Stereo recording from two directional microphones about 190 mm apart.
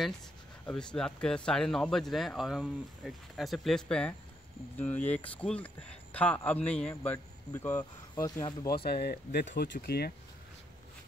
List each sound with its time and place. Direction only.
0.7 s speech: 5° left (ahead or behind)
8.6 s speech: 55° left (ahead or behind)